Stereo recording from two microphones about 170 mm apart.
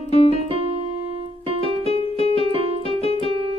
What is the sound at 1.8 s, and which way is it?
Music, 35° left (ahead or behind).